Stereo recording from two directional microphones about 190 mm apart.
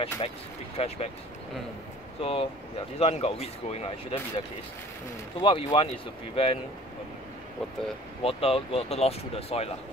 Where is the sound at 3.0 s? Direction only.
35° left (ahead or behind).